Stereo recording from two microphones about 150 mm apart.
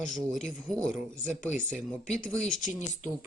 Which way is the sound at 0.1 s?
5° left (ahead or behind).